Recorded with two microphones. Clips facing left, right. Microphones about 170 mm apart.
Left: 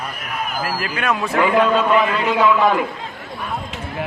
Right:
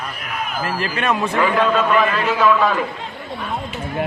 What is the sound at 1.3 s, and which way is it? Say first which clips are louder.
A man's voice: left 3 dB; 10° left (ahead or behind).